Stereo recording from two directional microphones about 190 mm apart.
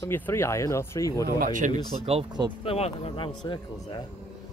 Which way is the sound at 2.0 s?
30° right (ahead or behind).